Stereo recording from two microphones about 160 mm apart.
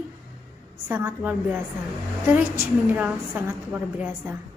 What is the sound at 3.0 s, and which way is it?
A woman's voice, 10° right (ahead or behind).